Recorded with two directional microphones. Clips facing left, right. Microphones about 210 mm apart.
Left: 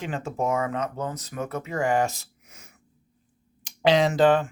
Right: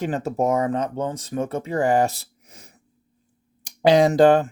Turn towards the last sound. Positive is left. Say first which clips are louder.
# right 5 dB
turn(degrees=-40)  # may be behind; listen again after turning